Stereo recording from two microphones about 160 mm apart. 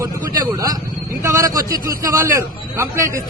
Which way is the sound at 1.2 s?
20° right (ahead or behind).